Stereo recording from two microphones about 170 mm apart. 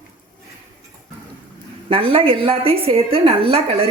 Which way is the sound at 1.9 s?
30° right (ahead or behind).